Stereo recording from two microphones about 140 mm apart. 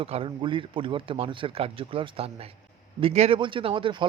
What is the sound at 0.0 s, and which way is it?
Speech, 40° right (ahead or behind).